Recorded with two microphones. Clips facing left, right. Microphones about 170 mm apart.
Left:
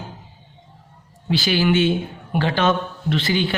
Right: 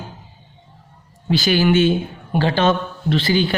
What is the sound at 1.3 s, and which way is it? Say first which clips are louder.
Speech: right 3 dB; 45° right (ahead or behind).